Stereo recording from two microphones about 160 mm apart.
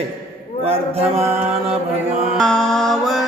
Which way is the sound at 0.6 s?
35° right (ahead or behind).